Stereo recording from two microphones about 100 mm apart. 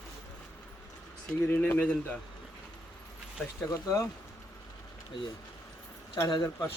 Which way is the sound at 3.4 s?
5° left (ahead or behind).